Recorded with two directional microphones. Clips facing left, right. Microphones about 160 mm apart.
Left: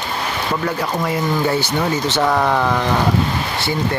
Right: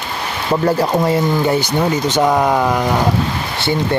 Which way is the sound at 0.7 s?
35° right (ahead or behind).